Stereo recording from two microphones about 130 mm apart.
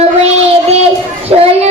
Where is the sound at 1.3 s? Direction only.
45° right (ahead or behind).